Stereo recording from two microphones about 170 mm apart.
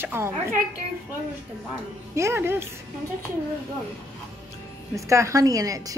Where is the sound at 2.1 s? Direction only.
15° right (ahead or behind).